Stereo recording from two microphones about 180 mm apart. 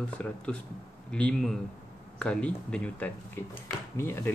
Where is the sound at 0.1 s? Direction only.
5° left (ahead or behind).